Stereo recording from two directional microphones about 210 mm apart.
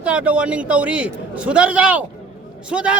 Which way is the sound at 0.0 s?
5° right (ahead or behind).